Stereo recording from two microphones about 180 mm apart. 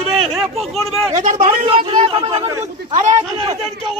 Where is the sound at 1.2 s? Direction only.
45° right (ahead or behind).